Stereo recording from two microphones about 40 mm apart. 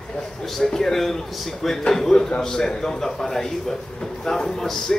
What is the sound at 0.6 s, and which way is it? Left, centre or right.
Speech, centre.